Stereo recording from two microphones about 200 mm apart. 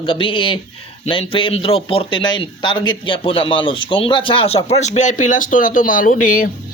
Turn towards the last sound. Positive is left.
turn(degrees=45)  # may be behind; listen again after turning